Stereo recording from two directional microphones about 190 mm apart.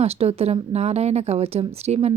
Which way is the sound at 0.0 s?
35° right (ahead or behind).